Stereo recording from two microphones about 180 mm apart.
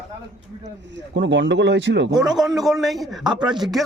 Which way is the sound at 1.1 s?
90° right.